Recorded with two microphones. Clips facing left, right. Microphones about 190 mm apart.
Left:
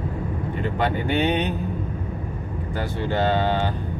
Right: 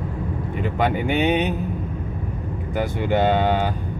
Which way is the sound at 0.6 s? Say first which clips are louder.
Right 3 dB; 10° right (ahead or behind).